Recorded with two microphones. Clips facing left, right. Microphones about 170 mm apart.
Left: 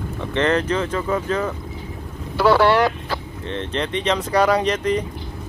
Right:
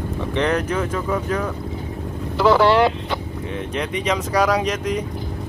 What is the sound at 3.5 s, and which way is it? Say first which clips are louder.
Speech: left 2 dB; 10° right (ahead or behind).